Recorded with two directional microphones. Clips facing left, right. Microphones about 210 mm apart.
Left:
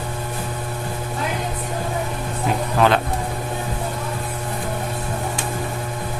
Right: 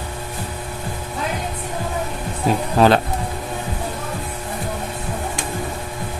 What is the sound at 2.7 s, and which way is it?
Speech, 35° right (ahead or behind).